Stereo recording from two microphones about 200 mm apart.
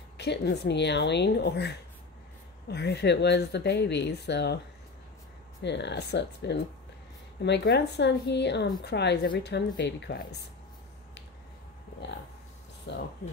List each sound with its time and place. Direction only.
0.2 s speech: 55° left (ahead or behind)
5.6 s speech: 60° left (ahead or behind)
12.9 s speech: 60° left (ahead or behind)